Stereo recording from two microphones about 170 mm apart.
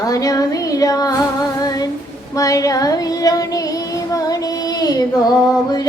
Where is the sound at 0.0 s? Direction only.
20° left (ahead or behind).